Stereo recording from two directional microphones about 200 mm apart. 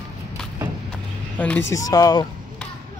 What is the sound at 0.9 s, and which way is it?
Vehicle, 5° left (ahead or behind).